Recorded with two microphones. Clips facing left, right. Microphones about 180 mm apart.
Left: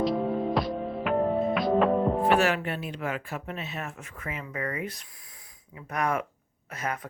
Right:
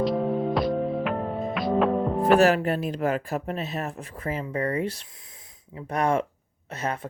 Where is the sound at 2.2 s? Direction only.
40° right (ahead or behind).